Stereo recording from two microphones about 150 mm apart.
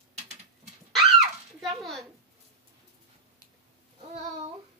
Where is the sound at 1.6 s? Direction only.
Centre (ahead or behind).